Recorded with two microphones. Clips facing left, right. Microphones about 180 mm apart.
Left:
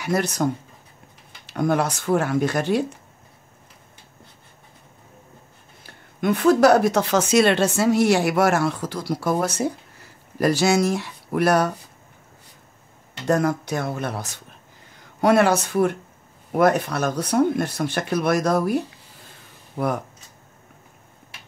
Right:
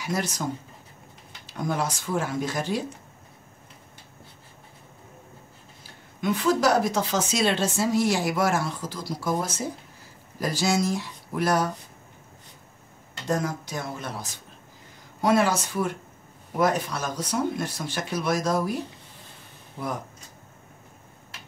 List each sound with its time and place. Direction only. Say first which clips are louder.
0.0 s speech: left 6 dB; 65° left (ahead or behind)
5.9 s speech: left 5 dB; 60° left (ahead or behind)
13.3 s speech: left 7 dB; 65° left (ahead or behind)